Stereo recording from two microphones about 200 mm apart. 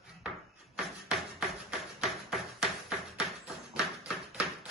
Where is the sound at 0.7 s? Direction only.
Centre (ahead or behind).